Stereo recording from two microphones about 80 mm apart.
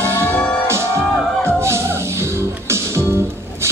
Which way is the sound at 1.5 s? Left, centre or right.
Right.